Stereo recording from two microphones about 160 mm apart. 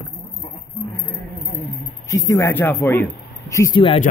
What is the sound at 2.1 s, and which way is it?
Speech, 20° left (ahead or behind).